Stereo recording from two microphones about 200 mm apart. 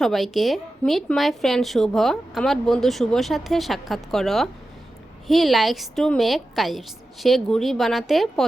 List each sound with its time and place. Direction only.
0.0 s a woman's voice: centre (ahead or behind)